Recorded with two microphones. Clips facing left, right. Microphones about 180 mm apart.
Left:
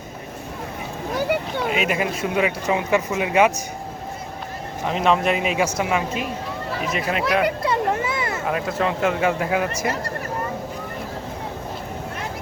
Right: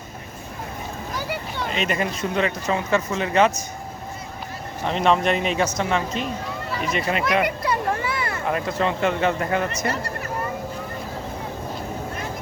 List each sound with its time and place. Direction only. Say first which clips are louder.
1.1 s a sound: left 8 dB; 55° left (ahead or behind)
1.6 s speech: even; 5° left (ahead or behind)
4.9 s speech: even; 5° left (ahead or behind)
7.4 s children playing: left 3 dB; 25° left (ahead or behind)
8.4 s speech: even; centre (ahead or behind)